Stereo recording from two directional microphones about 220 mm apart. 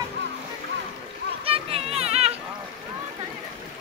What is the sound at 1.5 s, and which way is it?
Children playing, 25° right (ahead or behind).